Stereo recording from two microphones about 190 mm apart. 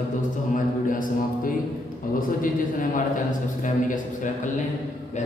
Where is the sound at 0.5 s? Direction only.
45° left (ahead or behind).